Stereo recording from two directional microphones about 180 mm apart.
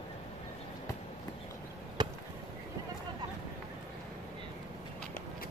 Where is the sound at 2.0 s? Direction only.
25° right (ahead or behind).